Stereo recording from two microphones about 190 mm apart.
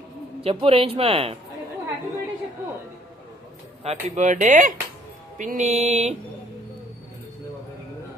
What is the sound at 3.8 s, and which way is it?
Speech, 35° right (ahead or behind).